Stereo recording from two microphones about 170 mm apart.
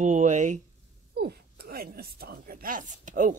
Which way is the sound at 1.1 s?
65° right (ahead or behind).